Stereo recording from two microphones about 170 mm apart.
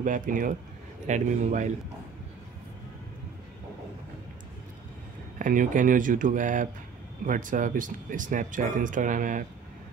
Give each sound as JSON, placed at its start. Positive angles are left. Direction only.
{"t": 0.0, "sound": "speech", "side_deg": -50}
{"t": 5.4, "sound": "speech", "side_deg": -50}